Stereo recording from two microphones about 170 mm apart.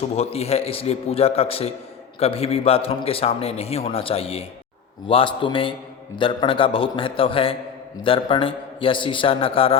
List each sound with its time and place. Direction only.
0.2 s a man's voice: 35° left (ahead or behind)